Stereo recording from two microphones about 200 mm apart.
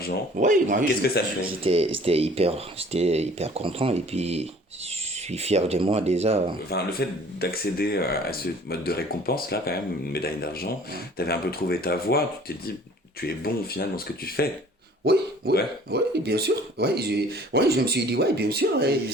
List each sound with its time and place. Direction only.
0.3 s speech: 40° right (ahead or behind)
1.6 s speech: 30° right (ahead or behind)
6.7 s speech: 55° left (ahead or behind)
13.2 s speech: 50° left (ahead or behind)
15.0 s speech: 55° right (ahead or behind)